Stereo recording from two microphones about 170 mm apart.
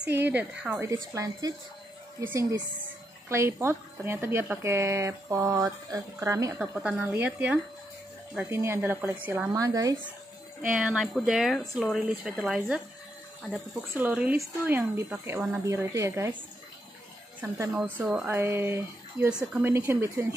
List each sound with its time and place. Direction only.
0.1 s speech: 10° right (ahead or behind)
6.7 s speech: 5° right (ahead or behind)
10.7 s speech: 5° right (ahead or behind)
17.4 s speech: 10° right (ahead or behind)